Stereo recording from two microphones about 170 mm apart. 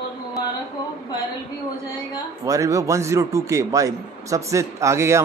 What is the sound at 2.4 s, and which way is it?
A man's voice, 20° right (ahead or behind).